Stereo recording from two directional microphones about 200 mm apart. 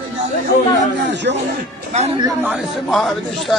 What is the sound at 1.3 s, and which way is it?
Speech, 60° right (ahead or behind).